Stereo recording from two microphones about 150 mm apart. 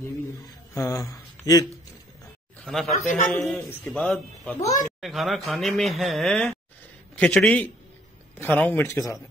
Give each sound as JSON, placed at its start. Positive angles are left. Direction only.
{"t": 0.7, "sound": "speech", "side_deg": 20}
{"t": 2.6, "sound": "a man's voice", "side_deg": 0}
{"t": 4.6, "sound": "speech", "side_deg": 20}
{"t": 5.0, "sound": "a man's voice", "side_deg": 0}